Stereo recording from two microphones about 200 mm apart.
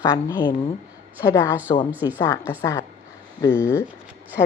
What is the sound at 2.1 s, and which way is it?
Speech, 15° left (ahead or behind).